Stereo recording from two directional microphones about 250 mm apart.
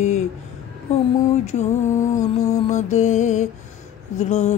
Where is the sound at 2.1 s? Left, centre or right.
Centre.